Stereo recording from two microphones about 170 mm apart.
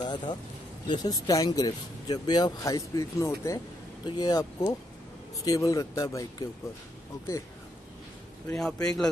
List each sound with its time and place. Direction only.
0.0 s a sound: 25° left (ahead or behind)
0.8 s speech: 25° left (ahead or behind)
8.5 s a man's voice: 5° left (ahead or behind)